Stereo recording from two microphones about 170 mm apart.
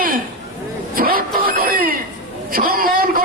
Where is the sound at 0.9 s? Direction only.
60° right (ahead or behind).